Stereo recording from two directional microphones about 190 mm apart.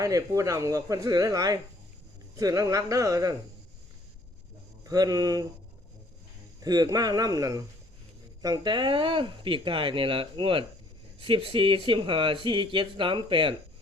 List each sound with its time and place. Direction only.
0.0 s speech: 15° right (ahead or behind)
4.8 s speech: 20° right (ahead or behind)
6.6 s speech: 20° right (ahead or behind)